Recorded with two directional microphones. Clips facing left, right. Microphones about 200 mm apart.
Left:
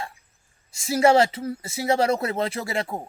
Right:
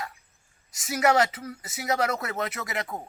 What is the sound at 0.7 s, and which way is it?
Speech, 25° left (ahead or behind).